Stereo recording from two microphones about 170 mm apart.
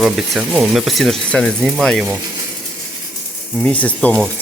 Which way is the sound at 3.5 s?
10° left (ahead or behind).